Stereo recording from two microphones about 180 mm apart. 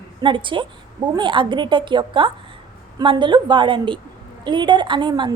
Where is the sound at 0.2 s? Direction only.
25° right (ahead or behind).